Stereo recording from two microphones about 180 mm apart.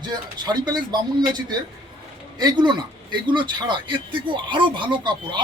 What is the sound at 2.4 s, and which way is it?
Speech, 25° right (ahead or behind).